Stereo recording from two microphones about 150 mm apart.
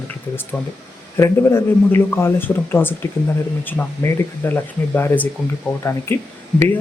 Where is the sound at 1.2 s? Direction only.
20° left (ahead or behind).